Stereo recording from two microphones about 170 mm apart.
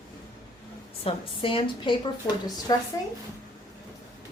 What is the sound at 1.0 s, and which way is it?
A woman's voice, 30° left (ahead or behind).